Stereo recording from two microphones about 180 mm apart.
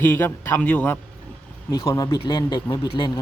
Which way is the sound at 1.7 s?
20° left (ahead or behind).